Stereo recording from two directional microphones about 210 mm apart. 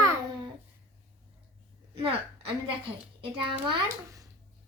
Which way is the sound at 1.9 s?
25° right (ahead or behind).